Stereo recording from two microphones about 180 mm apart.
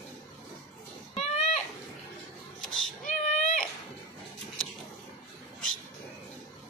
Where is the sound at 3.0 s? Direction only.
45° left (ahead or behind).